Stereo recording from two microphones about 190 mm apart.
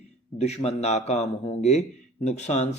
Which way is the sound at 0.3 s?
35° left (ahead or behind).